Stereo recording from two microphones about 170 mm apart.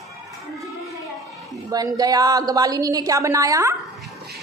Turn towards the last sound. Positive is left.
turn(degrees=-20)  # may be behind; listen again after turning